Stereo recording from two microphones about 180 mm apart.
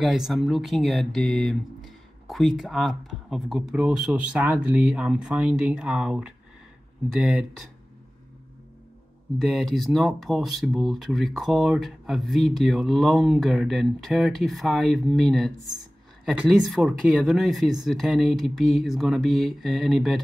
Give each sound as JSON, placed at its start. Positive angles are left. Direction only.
{"t": 0.0, "sound": "speech", "side_deg": 0}
{"t": 9.4, "sound": "speech", "side_deg": 0}